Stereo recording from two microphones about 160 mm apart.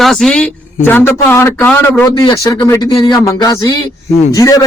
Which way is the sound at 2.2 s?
30° left (ahead or behind).